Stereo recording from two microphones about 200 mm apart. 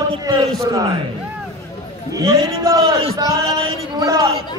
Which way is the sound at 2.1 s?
15° right (ahead or behind).